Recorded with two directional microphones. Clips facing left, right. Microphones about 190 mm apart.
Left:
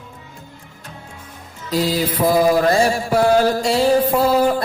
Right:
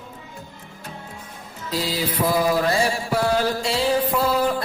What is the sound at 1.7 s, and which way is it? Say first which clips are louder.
Mantra: left 6 dB; 50° left (ahead or behind).